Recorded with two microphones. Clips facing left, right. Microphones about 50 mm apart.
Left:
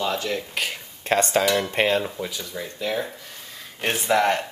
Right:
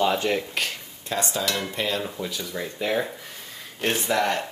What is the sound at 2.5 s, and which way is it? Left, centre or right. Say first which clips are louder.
Speech: right 3 dB; centre.